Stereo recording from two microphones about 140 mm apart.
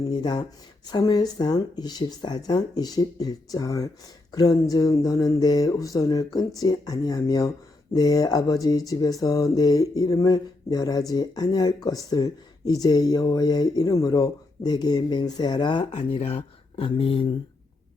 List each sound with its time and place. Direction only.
0.0 s speech: 35° left (ahead or behind)